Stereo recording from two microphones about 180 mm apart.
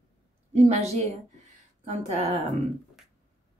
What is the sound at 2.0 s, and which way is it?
Speech, 40° right (ahead or behind).